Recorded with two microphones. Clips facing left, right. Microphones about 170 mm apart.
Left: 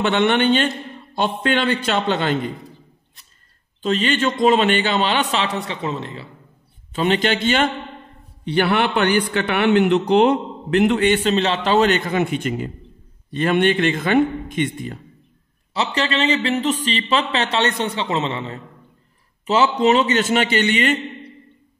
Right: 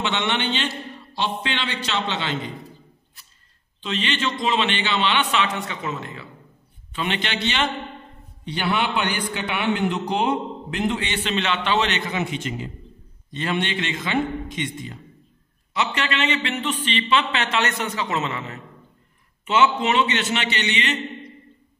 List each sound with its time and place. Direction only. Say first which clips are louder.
0.0 s a man's voice: left 8 dB; 55° left (ahead or behind)
3.8 s a man's voice: left 6 dB; 45° left (ahead or behind)
8.5 s a man's voice: left 6 dB; 60° left (ahead or behind)
11.2 s a man's voice: left 5 dB; 35° left (ahead or behind); by 15.0 s 55° left (ahead or behind)
15.7 s a man's voice: left 3 dB; 30° left (ahead or behind); by 21.0 s 50° left (ahead or behind)